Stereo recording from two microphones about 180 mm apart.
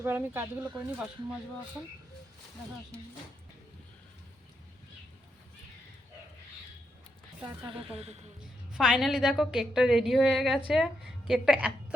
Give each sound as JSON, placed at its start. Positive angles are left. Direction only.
{"t": 0.0, "sound": "speech", "side_deg": -10}
{"t": 7.9, "sound": "a woman's voice", "side_deg": -35}
{"t": 8.7, "sound": "a woman's voice", "side_deg": 0}